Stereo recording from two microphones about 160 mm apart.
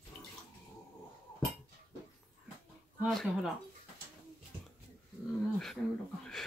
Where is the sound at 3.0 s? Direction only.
Centre (ahead or behind).